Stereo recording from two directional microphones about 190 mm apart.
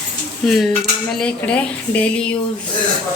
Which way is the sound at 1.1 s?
5° left (ahead or behind).